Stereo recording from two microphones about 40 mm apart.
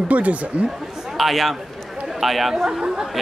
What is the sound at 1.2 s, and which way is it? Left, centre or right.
A man's voice, centre.